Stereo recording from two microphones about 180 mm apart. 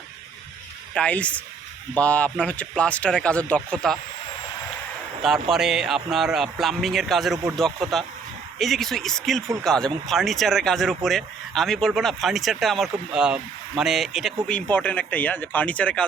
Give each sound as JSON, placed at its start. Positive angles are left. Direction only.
{"t": 0.9, "sound": "speech", "side_deg": 5}
{"t": 5.2, "sound": "speech", "side_deg": 0}